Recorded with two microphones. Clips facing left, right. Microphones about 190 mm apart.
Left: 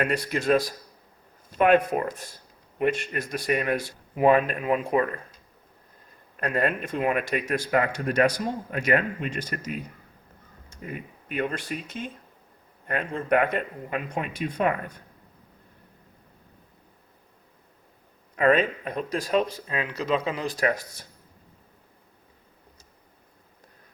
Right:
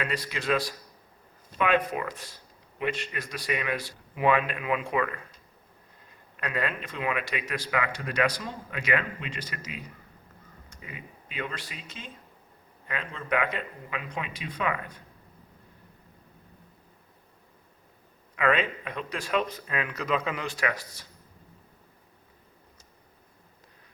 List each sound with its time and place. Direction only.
0.0 s speech: 50° left (ahead or behind)
6.3 s speech: 45° left (ahead or behind)
18.3 s speech: 40° left (ahead or behind)